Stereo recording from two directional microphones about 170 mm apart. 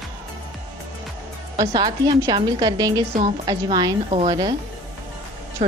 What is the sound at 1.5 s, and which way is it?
A woman's voice, 25° right (ahead or behind).